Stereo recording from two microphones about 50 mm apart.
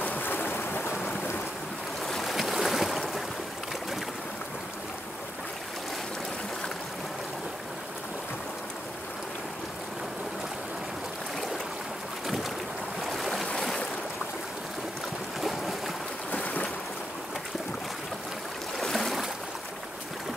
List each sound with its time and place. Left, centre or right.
0.0 s boat: left
2.0 s boat: centre
13.6 s boat: centre
16.3 s boat: left
18.8 s boat: centre